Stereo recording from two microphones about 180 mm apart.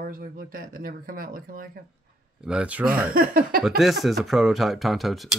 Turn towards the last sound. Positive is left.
turn(degrees=0)  # may be behind; listen again after turning